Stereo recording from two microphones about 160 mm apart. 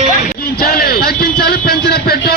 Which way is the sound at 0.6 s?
75° left (ahead or behind).